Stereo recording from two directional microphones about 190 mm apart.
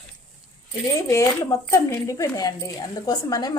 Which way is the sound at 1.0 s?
15° left (ahead or behind).